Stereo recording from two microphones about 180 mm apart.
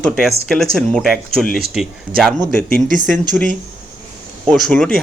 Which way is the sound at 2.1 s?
30° right (ahead or behind).